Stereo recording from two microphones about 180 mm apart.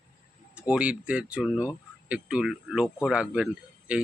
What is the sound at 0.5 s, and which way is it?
Speech, 5° right (ahead or behind).